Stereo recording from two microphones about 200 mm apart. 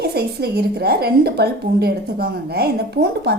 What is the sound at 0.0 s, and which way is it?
A woman's voice, 55° right (ahead or behind).